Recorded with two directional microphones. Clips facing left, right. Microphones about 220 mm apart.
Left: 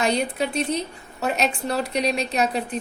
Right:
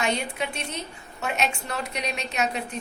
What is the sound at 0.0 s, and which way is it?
A woman's voice, 35° left (ahead or behind).